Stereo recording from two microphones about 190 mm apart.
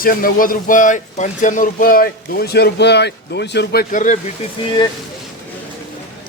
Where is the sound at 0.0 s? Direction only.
50° left (ahead or behind).